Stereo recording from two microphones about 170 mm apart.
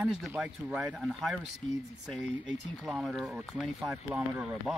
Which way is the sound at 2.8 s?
Centre (ahead or behind).